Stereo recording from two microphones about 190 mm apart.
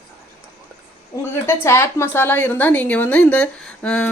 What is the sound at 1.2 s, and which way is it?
A woman's voice, 15° left (ahead or behind).